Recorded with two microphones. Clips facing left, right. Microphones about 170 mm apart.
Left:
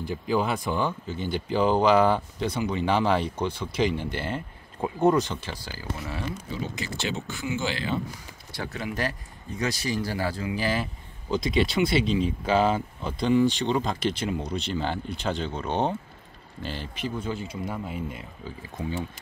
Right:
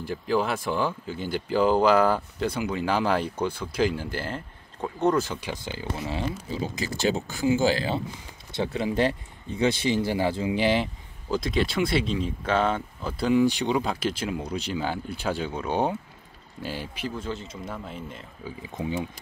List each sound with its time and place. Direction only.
0.0 s speech: centre (ahead or behind)
5.5 s speech: 20° right (ahead or behind)
11.2 s speech: centre (ahead or behind)
17.6 s speech: 5° left (ahead or behind)
18.4 s speech: 15° right (ahead or behind)